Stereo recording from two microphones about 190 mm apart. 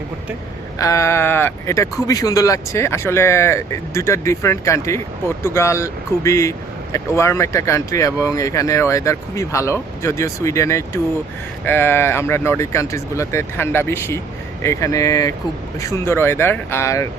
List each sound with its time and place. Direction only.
0.8 s speech: 15° left (ahead or behind)